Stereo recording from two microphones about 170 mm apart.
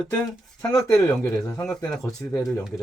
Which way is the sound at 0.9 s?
20° left (ahead or behind).